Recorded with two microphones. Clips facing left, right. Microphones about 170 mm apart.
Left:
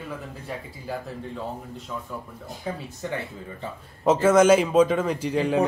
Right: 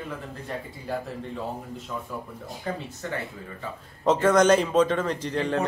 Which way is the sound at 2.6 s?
15° left (ahead or behind).